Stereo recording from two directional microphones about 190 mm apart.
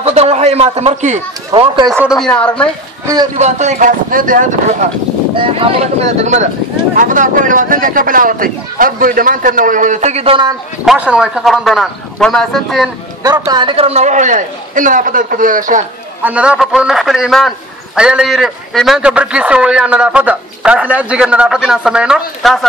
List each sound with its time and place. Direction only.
0.0 s a man's voice: 35° right (ahead or behind)
1.5 s speech: 25° right (ahead or behind)
2.1 s a man's voice: 5° left (ahead or behind)
3.3 s a man's voice: 35° right (ahead or behind)
5.3 s a man's voice: 30° right (ahead or behind)
10.9 s a man's voice: 5° right (ahead or behind)
13.2 s a man's voice: 20° right (ahead or behind); by 15.8 s 45° right (ahead or behind)
16.2 s a man's voice: 5° right (ahead or behind)